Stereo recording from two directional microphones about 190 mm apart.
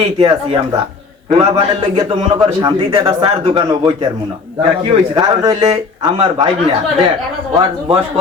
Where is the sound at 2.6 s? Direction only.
20° right (ahead or behind).